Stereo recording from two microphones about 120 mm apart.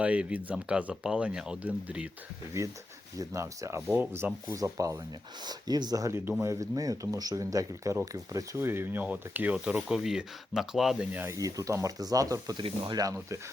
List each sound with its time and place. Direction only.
0.0 s speech: 10° right (ahead or behind)
2.6 s speech: 25° right (ahead or behind)
4.4 s speech: 30° right (ahead or behind)
11.3 s speech: 30° right (ahead or behind)